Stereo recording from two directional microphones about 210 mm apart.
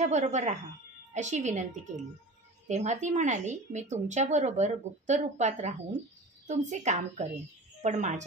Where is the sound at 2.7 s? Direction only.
35° right (ahead or behind).